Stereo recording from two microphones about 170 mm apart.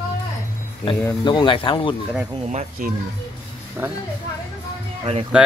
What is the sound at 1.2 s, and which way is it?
Speech, 25° left (ahead or behind).